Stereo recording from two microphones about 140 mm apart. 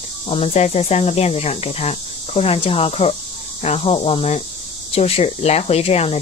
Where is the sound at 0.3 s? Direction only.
45° left (ahead or behind).